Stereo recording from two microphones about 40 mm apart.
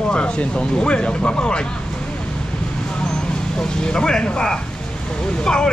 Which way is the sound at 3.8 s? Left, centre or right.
Centre.